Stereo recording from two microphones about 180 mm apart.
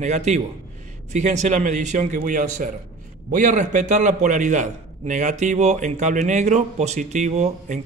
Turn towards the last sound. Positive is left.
turn(degrees=-40)  # may be behind; listen again after turning